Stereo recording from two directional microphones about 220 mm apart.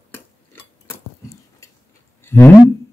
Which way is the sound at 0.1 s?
10° left (ahead or behind).